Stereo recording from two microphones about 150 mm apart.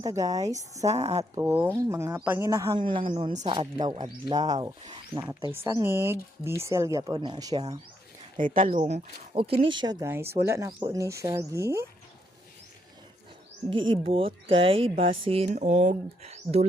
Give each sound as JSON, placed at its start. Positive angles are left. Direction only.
{"t": 0.0, "sound": "speech", "side_deg": -25}
{"t": 0.9, "sound": "speech", "side_deg": -45}
{"t": 1.4, "sound": "speech", "side_deg": -15}
{"t": 2.8, "sound": "speech", "side_deg": -35}
{"t": 3.1, "sound": "speech", "side_deg": -45}
{"t": 5.5, "sound": "speech", "side_deg": -15}
{"t": 8.4, "sound": "speech", "side_deg": -65}
{"t": 8.8, "sound": "speech", "side_deg": -40}
{"t": 10.1, "sound": "speech", "side_deg": -15}
{"t": 13.7, "sound": "speech", "side_deg": -35}
{"t": 15.5, "sound": "speech", "side_deg": -55}